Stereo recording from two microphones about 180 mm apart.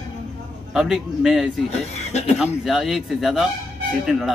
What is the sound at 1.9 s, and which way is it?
Speech, 35° left (ahead or behind).